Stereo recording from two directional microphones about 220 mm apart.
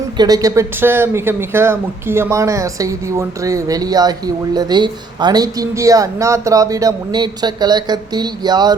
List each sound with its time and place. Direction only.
0.2 s speech: 15° right (ahead or behind)